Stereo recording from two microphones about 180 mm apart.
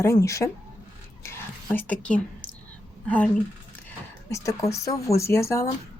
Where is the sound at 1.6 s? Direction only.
5° left (ahead or behind).